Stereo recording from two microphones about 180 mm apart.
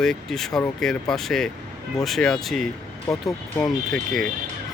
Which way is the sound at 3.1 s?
20° left (ahead or behind).